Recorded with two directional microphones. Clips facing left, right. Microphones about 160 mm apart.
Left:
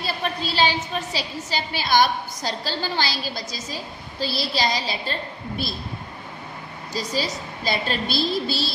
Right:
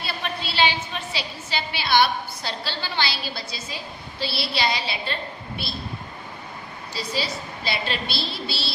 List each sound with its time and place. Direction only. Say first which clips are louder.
0.0 s a woman's voice: left 3 dB; 40° left (ahead or behind)
6.9 s a woman's voice: left 2 dB; 45° left (ahead or behind)